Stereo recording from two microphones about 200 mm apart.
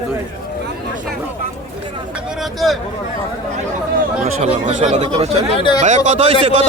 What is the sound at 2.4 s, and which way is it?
Speech, centre (ahead or behind).